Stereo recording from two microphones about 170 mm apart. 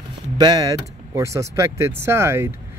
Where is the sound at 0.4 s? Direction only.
20° right (ahead or behind).